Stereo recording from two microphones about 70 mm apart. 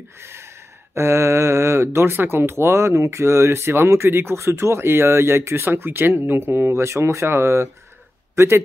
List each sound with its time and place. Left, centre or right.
0.2 s speech: right